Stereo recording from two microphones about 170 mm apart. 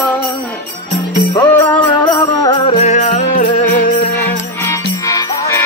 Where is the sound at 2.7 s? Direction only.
45° left (ahead or behind).